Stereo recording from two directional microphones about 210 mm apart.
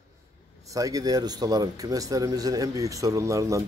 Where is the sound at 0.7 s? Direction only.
15° right (ahead or behind).